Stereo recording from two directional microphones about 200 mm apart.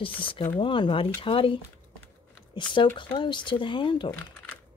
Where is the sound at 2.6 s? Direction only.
25° left (ahead or behind).